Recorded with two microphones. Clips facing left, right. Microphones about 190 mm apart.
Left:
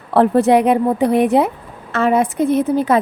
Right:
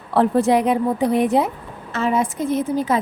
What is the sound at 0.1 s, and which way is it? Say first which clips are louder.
A woman's voice: left 4 dB; 60° left (ahead or behind).